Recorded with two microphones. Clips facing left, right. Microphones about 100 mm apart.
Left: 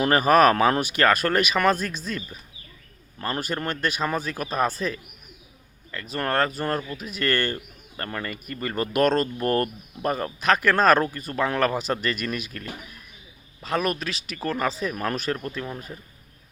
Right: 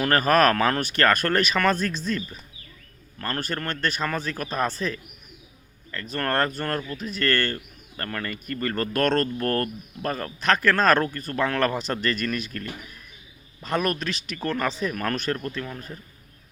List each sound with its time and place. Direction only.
0.0 s speech: 15° left (ahead or behind)
15.6 s speech: 20° left (ahead or behind)